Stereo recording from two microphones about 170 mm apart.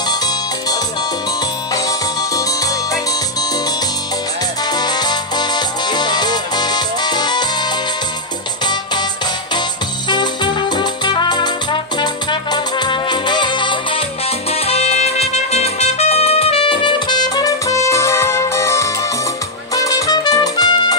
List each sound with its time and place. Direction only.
0.1 s music: 25° left (ahead or behind)
4.6 s music: 25° left (ahead or behind)
9.5 s music: 25° left (ahead or behind)